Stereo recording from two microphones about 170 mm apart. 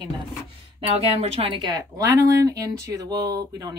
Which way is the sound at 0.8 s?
35° right (ahead or behind).